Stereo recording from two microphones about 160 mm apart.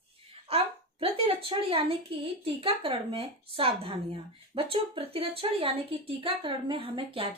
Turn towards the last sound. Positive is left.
turn(degrees=-35)  # may be behind; listen again after turning